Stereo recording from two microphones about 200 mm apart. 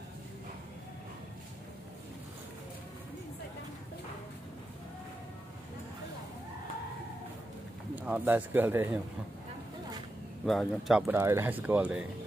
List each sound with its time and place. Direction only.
7.9 s speech: 10° right (ahead or behind)
10.4 s speech: centre (ahead or behind)